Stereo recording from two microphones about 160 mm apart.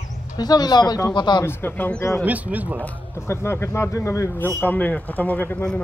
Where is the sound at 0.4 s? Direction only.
25° left (ahead or behind).